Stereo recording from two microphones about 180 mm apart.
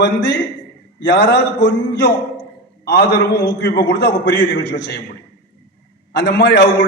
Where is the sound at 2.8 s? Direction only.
65° left (ahead or behind).